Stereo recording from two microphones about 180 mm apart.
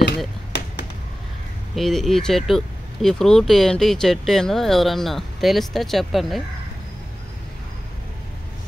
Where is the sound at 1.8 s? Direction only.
Centre (ahead or behind).